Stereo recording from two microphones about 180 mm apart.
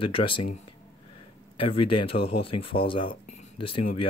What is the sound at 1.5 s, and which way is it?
Speech, 30° left (ahead or behind).